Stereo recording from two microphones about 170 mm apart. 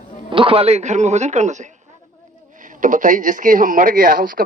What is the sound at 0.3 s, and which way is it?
Speech, 30° right (ahead or behind).